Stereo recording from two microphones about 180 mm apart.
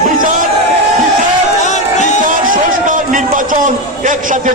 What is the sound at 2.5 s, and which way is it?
A man's voice, 50° right (ahead or behind).